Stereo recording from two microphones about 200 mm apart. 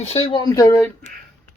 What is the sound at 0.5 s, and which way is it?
Speech, 15° left (ahead or behind).